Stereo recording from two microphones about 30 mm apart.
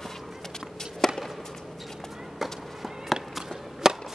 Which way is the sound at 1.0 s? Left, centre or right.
Centre.